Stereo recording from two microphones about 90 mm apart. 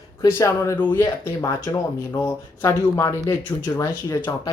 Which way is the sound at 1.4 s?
35° left (ahead or behind).